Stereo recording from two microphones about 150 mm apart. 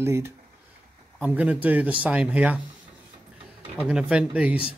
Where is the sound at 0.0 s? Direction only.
15° right (ahead or behind).